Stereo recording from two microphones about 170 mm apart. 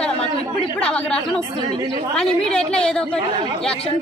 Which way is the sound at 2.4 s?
5° left (ahead or behind).